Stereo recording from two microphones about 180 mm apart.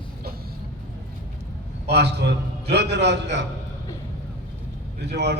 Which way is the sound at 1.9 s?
70° right (ahead or behind).